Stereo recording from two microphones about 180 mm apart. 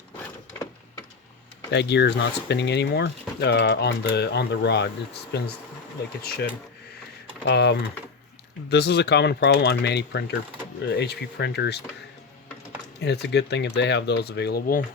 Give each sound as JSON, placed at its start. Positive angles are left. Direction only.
{"t": 1.7, "sound": "speech", "side_deg": 70}
{"t": 7.4, "sound": "speech", "side_deg": 70}
{"t": 13.0, "sound": "speech", "side_deg": 70}